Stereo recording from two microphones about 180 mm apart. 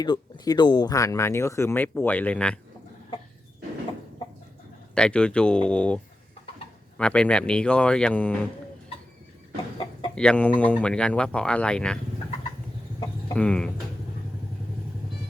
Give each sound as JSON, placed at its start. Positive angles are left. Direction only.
{"t": 0.0, "sound": "speech", "side_deg": 20}
{"t": 4.9, "sound": "speech", "side_deg": 5}
{"t": 7.0, "sound": "speech", "side_deg": 5}
{"t": 9.7, "sound": "chicken", "side_deg": 25}
{"t": 10.2, "sound": "speech", "side_deg": 5}
{"t": 13.3, "sound": "speech", "side_deg": 5}